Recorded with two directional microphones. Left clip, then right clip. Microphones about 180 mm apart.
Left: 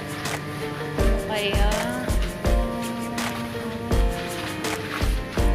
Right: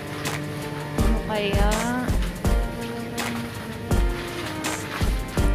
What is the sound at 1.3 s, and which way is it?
Music, 25° right (ahead or behind).